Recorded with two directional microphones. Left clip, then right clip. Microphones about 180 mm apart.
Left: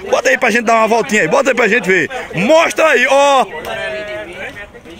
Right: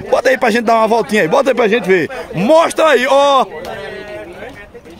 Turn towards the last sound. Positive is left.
turn(degrees=-5)  # may be behind; listen again after turning